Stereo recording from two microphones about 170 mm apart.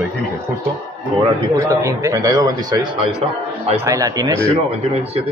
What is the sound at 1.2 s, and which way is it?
Speech, 20° right (ahead or behind).